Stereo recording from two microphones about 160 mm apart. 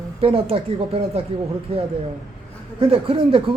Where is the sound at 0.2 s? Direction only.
40° right (ahead or behind).